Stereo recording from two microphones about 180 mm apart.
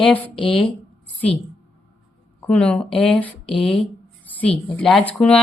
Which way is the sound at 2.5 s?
5° left (ahead or behind).